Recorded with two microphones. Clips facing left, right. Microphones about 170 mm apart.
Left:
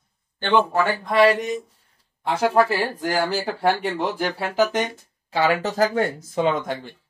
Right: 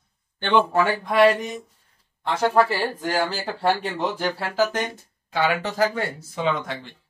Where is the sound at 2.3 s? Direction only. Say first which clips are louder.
Left 1 dB; 15° left (ahead or behind).